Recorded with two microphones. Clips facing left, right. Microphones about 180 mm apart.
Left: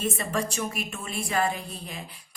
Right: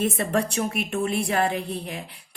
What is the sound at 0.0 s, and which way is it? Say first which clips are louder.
A woman's voice: right 5 dB; 60° right (ahead or behind).